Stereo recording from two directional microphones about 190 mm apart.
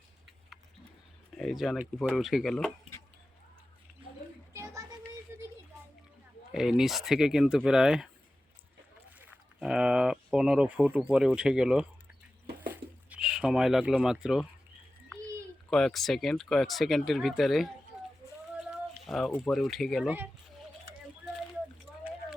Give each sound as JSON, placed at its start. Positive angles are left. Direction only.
{"t": 1.4, "sound": "speech", "side_deg": 0}
{"t": 4.5, "sound": "child singing", "side_deg": -15}
{"t": 5.3, "sound": "a sound", "side_deg": -15}
{"t": 6.5, "sound": "speech", "side_deg": -5}
{"t": 9.1, "sound": "speech", "side_deg": -5}
{"t": 12.7, "sound": "a sound", "side_deg": -5}
{"t": 15.7, "sound": "speech", "side_deg": 0}
{"t": 19.0, "sound": "speech", "side_deg": 0}